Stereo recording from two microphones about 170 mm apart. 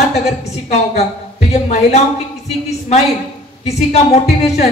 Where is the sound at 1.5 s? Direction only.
40° left (ahead or behind).